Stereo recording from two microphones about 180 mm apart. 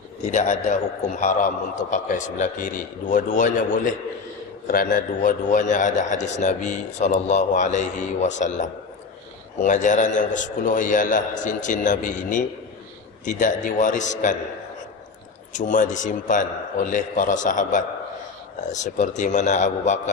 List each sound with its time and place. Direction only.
0.3 s a man's voice: 40° left (ahead or behind)
15.5 s a man's voice: 45° left (ahead or behind)